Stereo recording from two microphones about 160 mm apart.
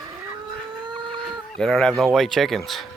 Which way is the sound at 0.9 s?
30° right (ahead or behind).